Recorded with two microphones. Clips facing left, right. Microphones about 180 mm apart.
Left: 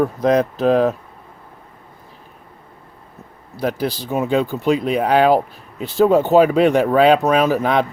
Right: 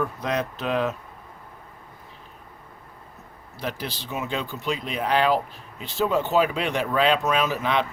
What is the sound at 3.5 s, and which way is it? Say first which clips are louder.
Speech: left 10 dB; 40° left (ahead or behind).